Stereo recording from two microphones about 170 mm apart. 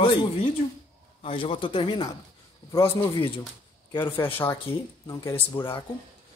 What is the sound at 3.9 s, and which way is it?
Speech, 10° left (ahead or behind).